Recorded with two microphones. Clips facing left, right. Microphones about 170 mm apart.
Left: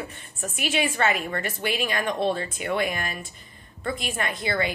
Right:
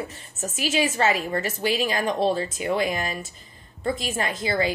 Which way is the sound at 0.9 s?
30° right (ahead or behind).